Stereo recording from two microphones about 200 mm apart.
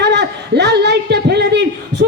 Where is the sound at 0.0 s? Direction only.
60° right (ahead or behind).